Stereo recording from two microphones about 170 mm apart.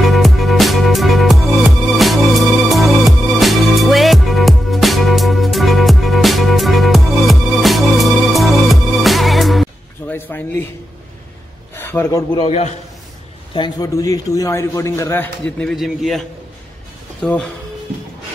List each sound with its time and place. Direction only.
0.0 s music: centre (ahead or behind)
10.1 s a sound: 10° left (ahead or behind)
11.7 s a sound: 15° left (ahead or behind)
12.4 s a man's voice: 40° left (ahead or behind)
13.5 s a man's voice: 25° left (ahead or behind); by 16.2 s centre (ahead or behind)
17.2 s speech: 5° left (ahead or behind)